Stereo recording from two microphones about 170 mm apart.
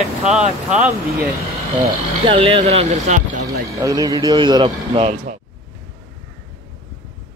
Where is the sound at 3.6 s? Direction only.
20° right (ahead or behind).